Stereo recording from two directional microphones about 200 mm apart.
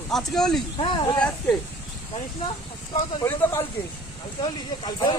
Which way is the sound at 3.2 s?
15° left (ahead or behind).